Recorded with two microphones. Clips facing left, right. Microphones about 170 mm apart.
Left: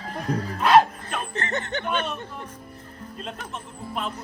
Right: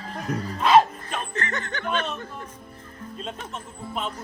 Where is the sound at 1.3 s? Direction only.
25° left (ahead or behind).